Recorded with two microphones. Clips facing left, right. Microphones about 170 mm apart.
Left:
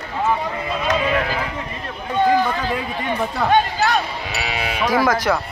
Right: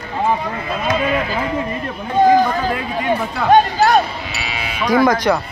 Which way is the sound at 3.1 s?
45° right (ahead or behind).